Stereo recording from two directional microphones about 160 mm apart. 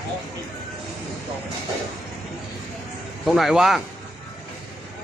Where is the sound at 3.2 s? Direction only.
Centre (ahead or behind).